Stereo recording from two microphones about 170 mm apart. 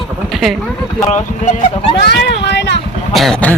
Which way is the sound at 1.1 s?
40° left (ahead or behind).